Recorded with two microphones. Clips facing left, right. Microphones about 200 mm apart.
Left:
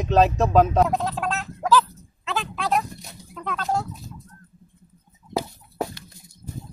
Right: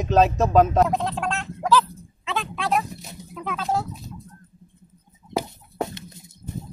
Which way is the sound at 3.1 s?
20° right (ahead or behind).